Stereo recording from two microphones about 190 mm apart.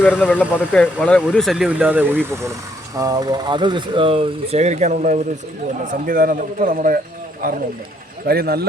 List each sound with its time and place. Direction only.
0.0 s speech: 10° left (ahead or behind); by 8.6 s 55° right (ahead or behind)